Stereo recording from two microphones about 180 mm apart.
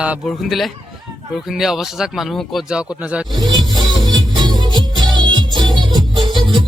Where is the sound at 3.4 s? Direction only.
25° right (ahead or behind).